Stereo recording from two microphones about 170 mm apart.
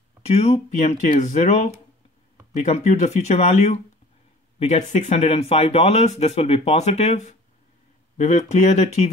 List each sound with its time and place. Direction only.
0.2 s speech: 40° left (ahead or behind)